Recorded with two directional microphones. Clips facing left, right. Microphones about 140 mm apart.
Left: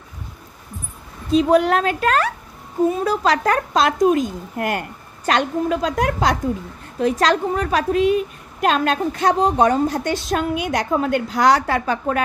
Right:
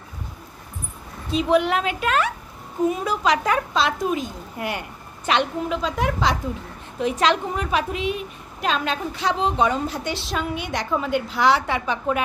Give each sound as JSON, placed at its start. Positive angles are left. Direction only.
{"t": 1.3, "sound": "a woman's voice", "side_deg": 40}
{"t": 10.5, "sound": "a woman's voice", "side_deg": 5}
{"t": 11.2, "sound": "a woman's voice", "side_deg": 40}